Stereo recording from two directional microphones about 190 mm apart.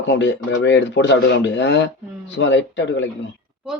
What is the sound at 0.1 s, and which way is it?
Speech, 70° left (ahead or behind).